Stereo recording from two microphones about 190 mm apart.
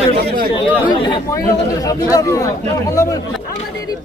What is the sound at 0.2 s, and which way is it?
Chatter, 55° right (ahead or behind).